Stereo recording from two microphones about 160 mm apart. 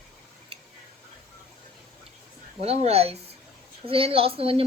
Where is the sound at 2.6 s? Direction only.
40° right (ahead or behind).